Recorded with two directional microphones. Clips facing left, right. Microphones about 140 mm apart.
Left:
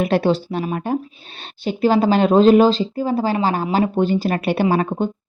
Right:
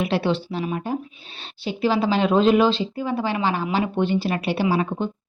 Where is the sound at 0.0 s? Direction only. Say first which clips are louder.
Left 5 dB; 45° left (ahead or behind).